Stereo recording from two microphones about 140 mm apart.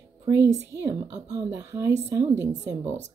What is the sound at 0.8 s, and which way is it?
A woman's voice, 25° right (ahead or behind).